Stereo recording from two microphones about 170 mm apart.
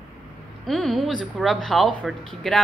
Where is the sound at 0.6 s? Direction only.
Centre (ahead or behind).